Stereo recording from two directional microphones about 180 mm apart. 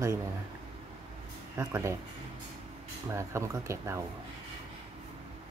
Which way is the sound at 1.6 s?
15° right (ahead or behind).